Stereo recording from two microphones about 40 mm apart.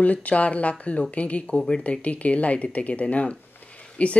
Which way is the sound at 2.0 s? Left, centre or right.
Left.